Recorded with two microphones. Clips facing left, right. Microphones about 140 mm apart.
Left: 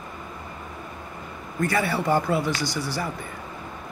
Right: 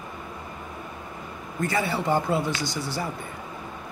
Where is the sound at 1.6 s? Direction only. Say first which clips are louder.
Left 2 dB; 20° right (ahead or behind).